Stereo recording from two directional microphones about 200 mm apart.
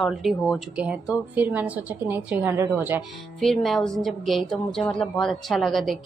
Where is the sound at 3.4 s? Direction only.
Centre (ahead or behind).